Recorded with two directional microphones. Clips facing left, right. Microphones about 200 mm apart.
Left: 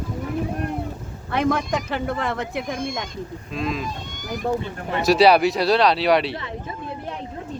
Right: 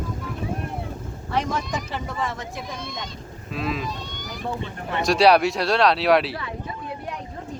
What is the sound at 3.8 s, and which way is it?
Speech, 50° left (ahead or behind).